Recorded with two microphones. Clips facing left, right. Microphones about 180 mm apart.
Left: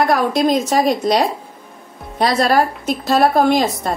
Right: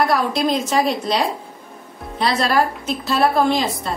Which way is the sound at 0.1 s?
45° left (ahead or behind).